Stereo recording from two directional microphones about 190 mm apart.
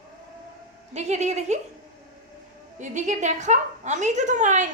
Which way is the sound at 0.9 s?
35° right (ahead or behind).